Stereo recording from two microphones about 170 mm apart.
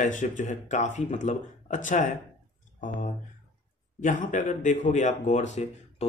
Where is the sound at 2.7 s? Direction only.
50° left (ahead or behind).